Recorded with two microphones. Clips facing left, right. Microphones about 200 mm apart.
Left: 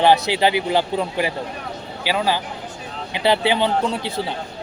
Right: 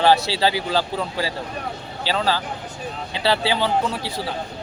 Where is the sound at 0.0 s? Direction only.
20° left (ahead or behind).